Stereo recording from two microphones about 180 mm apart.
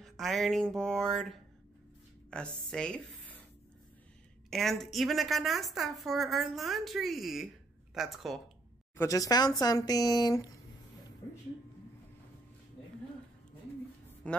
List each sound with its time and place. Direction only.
0.0 s a woman's voice: centre (ahead or behind)
4.5 s a woman's voice: centre (ahead or behind)
8.9 s speech: 20° left (ahead or behind)
14.2 s a woman's voice: 5° left (ahead or behind)